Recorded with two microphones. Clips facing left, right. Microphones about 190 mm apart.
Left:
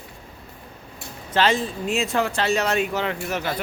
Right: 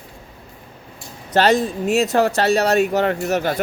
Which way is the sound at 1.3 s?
40° right (ahead or behind).